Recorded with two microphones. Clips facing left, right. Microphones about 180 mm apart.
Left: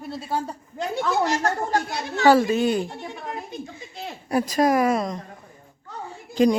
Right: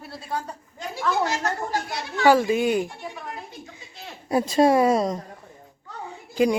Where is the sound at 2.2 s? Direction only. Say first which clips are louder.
Left 1 dB; 10° right (ahead or behind).